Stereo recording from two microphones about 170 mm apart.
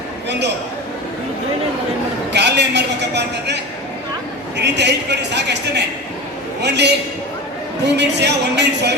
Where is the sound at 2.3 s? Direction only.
90° right.